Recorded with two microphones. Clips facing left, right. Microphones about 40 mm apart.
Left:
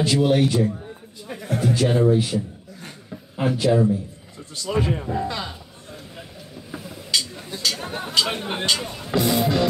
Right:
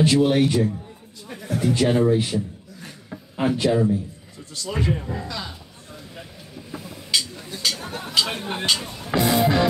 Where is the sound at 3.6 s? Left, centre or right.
Centre.